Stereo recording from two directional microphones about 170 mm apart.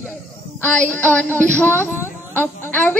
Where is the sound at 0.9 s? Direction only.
10° left (ahead or behind).